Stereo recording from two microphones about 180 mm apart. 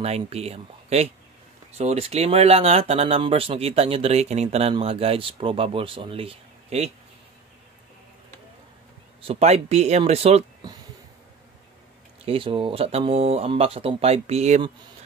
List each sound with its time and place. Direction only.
0.0 s speech: 35° right (ahead or behind)
9.2 s speech: 35° right (ahead or behind)
12.3 s speech: 30° right (ahead or behind)